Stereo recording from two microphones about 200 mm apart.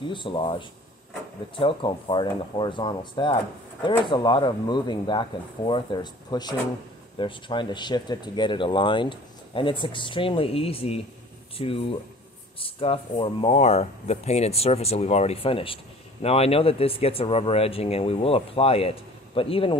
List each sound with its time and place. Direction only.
0.1 s speech: 25° left (ahead or behind)